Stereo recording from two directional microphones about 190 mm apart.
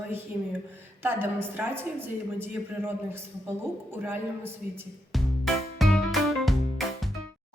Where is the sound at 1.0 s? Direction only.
10° right (ahead or behind).